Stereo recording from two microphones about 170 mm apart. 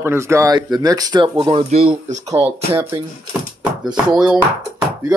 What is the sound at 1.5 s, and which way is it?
Speech, 35° right (ahead or behind).